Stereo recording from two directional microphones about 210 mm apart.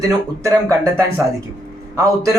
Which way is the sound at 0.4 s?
15° right (ahead or behind).